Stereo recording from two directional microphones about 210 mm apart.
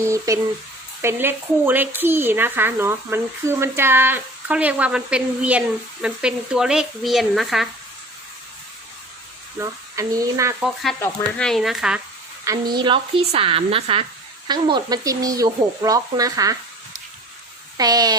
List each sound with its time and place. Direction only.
0.3 s speech: 15° right (ahead or behind)
9.6 s speech: 15° right (ahead or behind)
11.0 s speech: 5° left (ahead or behind)
12.5 s a woman's voice: 20° right (ahead or behind)
17.7 s speech: 20° right (ahead or behind)